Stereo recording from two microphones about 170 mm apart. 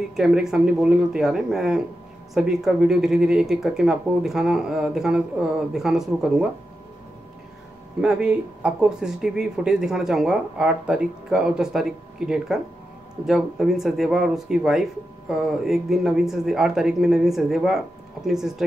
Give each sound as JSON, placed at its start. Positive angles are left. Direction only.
{"t": 0.1, "sound": "speech", "side_deg": -5}
{"t": 8.0, "sound": "speech", "side_deg": -5}